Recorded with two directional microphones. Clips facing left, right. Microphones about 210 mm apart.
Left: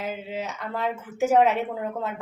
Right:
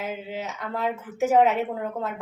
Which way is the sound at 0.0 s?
Centre (ahead or behind).